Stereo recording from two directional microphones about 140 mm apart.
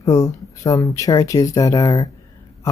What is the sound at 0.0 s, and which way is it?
Speech, 25° left (ahead or behind).